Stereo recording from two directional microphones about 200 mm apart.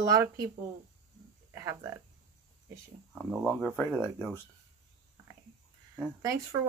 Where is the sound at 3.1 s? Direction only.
5° right (ahead or behind).